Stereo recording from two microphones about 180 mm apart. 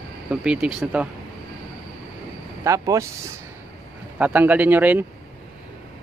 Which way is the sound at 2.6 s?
15° right (ahead or behind).